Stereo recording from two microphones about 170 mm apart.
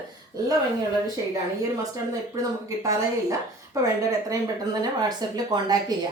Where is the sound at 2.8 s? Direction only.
20° right (ahead or behind).